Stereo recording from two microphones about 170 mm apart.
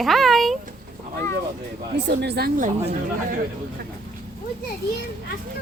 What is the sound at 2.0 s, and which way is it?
Speech, 75° right (ahead or behind).